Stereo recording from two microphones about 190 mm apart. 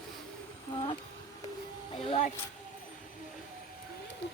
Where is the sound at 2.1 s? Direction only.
40° left (ahead or behind).